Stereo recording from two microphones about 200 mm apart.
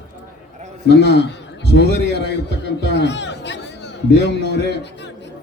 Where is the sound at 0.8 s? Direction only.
60° left (ahead or behind).